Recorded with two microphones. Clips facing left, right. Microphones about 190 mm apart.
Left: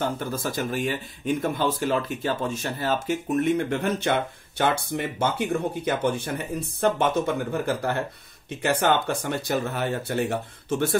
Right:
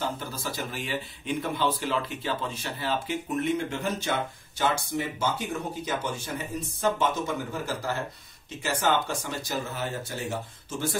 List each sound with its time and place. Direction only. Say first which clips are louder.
0.0 s speech: left 5 dB; 50° left (ahead or behind)